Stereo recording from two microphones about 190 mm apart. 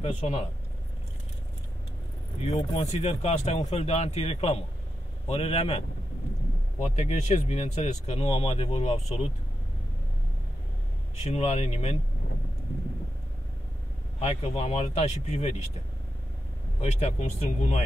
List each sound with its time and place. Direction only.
0.0 s speech: 30° left (ahead or behind)
2.4 s speech: 35° left (ahead or behind)
11.1 s speech: 35° left (ahead or behind)
14.2 s speech: 35° left (ahead or behind)
16.8 s speech: 35° left (ahead or behind)